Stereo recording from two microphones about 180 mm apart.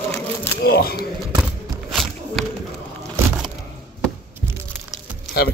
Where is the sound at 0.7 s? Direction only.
60° left (ahead or behind).